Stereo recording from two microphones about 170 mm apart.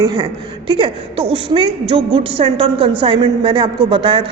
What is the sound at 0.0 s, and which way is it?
A woman's voice, 25° right (ahead or behind).